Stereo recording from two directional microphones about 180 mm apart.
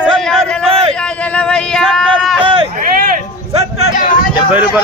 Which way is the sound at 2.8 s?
55° right (ahead or behind).